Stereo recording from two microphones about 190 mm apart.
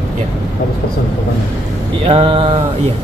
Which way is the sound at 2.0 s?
30° right (ahead or behind).